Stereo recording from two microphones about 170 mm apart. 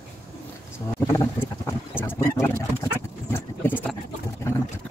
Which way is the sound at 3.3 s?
10° left (ahead or behind).